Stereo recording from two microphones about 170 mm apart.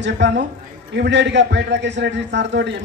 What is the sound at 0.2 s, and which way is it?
A man's voice, 90° right.